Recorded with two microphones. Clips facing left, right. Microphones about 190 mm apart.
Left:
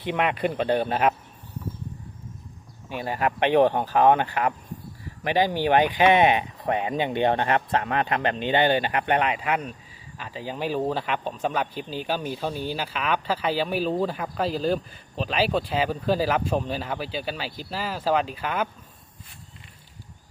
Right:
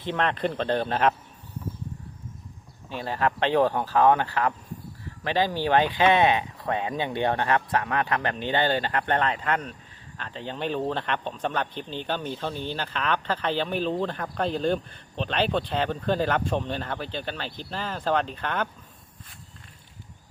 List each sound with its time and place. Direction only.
0.0 s speech: 10° left (ahead or behind)
2.9 s speech: 15° left (ahead or behind)